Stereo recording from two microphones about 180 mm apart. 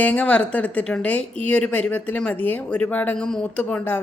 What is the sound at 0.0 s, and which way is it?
Speech, 10° left (ahead or behind).